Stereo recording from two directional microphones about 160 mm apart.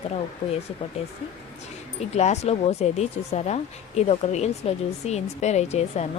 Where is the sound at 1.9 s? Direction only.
45° left (ahead or behind).